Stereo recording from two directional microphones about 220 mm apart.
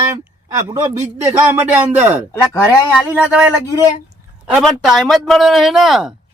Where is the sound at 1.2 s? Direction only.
10° right (ahead or behind).